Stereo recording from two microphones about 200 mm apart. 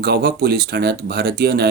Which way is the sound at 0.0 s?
50° right (ahead or behind).